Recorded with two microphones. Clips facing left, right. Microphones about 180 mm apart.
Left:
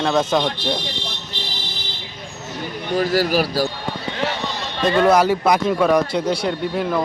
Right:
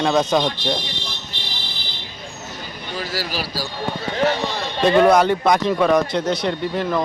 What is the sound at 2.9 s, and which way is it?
Speech, 50° left (ahead or behind).